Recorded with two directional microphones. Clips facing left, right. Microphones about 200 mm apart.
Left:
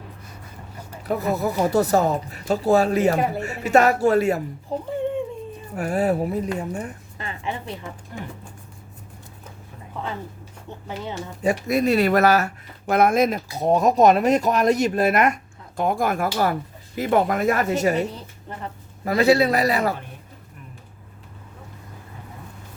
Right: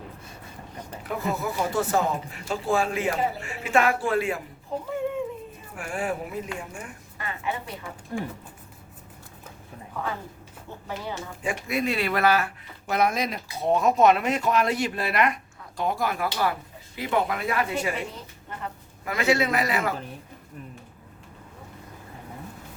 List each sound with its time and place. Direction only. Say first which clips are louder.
1.0 s speech: left 6 dB; 40° left (ahead or behind)
4.9 s a sound: left 3 dB; 30° left (ahead or behind)
5.7 s speech: left 8 dB; 40° left (ahead or behind)
11.4 s speech: left 7 dB; 40° left (ahead or behind)